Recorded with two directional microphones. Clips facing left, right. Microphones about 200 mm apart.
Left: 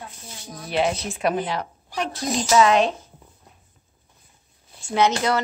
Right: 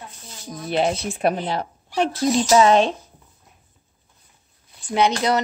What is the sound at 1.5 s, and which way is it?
A woman's voice, 30° right (ahead or behind).